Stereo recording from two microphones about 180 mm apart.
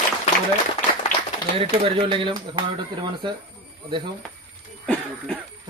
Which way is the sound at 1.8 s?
30° right (ahead or behind).